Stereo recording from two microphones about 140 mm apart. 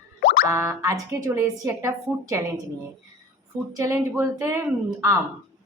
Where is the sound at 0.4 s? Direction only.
20° right (ahead or behind).